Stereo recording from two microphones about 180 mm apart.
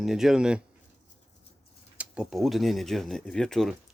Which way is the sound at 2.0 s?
5° right (ahead or behind).